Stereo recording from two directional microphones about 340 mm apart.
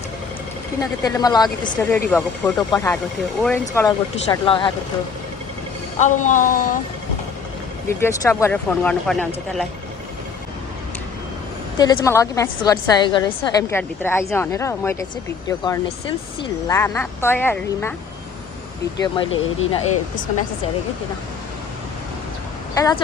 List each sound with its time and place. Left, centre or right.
0.8 s a woman's voice: centre
6.0 s speech: left
7.9 s speech: centre
11.8 s a woman's voice: centre
18.9 s a woman's voice: centre
22.7 s a woman's voice: centre